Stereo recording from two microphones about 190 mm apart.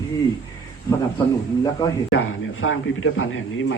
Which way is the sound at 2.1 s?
90° left.